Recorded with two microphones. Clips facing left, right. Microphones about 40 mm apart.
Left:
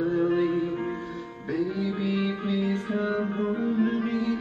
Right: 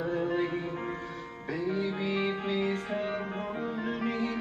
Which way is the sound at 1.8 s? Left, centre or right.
Centre.